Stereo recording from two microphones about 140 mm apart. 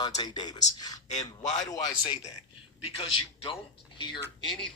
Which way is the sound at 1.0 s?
55° left (ahead or behind).